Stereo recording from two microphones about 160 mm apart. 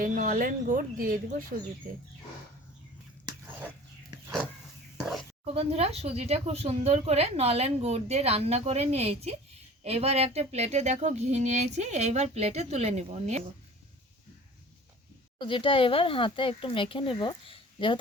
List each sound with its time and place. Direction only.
0.0 s speech: 60° right (ahead or behind)
4.9 s a sound: centre (ahead or behind)
5.5 s a woman's voice: 40° right (ahead or behind)
15.4 s speech: 30° left (ahead or behind)